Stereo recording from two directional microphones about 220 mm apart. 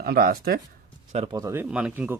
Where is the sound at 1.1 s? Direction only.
30° right (ahead or behind).